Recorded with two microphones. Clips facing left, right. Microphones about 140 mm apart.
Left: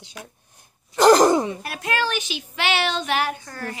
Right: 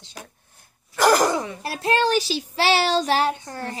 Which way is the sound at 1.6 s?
30° right (ahead or behind).